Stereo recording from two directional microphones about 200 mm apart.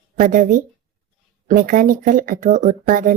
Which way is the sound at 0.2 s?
40° right (ahead or behind).